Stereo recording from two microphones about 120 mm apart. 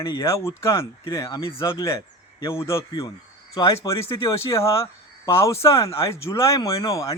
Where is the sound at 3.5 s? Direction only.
35° left (ahead or behind).